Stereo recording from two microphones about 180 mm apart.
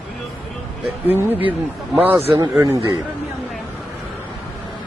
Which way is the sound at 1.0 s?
10° right (ahead or behind).